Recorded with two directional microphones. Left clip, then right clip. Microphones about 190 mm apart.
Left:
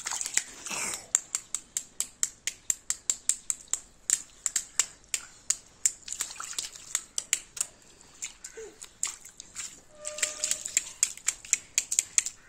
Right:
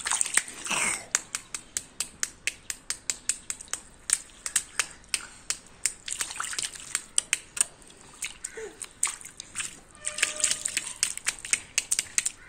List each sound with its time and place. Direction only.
0.0 s biting: 10° left (ahead or behind)
5.5 s finger snapping: 5° left (ahead or behind)
6.1 s a sound: 5° left (ahead or behind)
8.8 s bathtub: 5° left (ahead or behind)
10.0 s a sound: 10° left (ahead or behind)
11.1 s crumpling: 5° left (ahead or behind)